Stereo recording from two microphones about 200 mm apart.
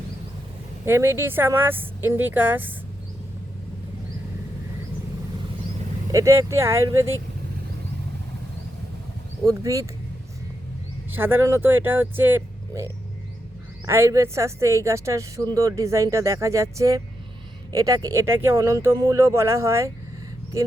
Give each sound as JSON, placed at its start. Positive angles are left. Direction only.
{"t": 0.9, "sound": "speech", "side_deg": -10}
{"t": 6.1, "sound": "speech", "side_deg": -15}
{"t": 9.5, "sound": "speech", "side_deg": -15}
{"t": 11.1, "sound": "speech", "side_deg": -10}